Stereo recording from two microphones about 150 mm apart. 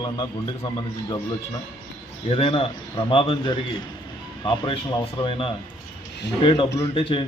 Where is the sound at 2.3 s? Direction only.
40° left (ahead or behind).